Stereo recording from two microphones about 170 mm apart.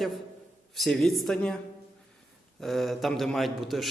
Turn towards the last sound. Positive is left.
turn(degrees=0)  # may be behind; listen again after turning